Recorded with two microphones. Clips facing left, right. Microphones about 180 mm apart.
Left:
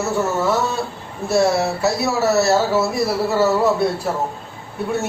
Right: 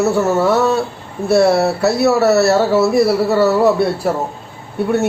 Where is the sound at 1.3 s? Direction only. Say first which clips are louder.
Right 5 dB; 65° right (ahead or behind).